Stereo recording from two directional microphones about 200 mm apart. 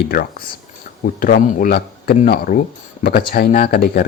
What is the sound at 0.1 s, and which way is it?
Speech, 45° left (ahead or behind).